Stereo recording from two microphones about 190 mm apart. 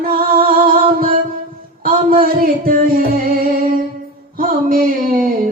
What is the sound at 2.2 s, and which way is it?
Music, 50° right (ahead or behind).